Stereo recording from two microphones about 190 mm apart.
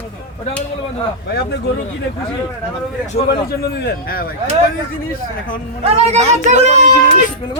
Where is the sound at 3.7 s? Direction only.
55° left (ahead or behind).